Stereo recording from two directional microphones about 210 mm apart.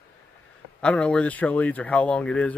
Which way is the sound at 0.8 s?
5° left (ahead or behind).